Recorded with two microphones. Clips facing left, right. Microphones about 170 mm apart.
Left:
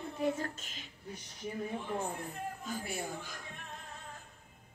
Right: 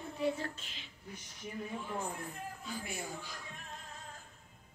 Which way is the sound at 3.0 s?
50° left (ahead or behind).